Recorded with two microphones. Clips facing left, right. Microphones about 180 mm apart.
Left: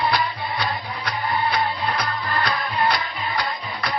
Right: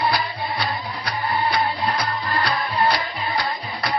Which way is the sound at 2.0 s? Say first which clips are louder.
Right 1 dB; 30° right (ahead or behind).